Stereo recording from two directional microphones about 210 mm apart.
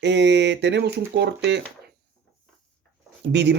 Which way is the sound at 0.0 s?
55° right (ahead or behind).